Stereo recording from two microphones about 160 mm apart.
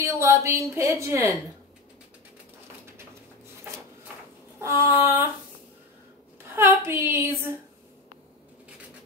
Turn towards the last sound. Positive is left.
turn(degrees=-15)  # may be behind; listen again after turning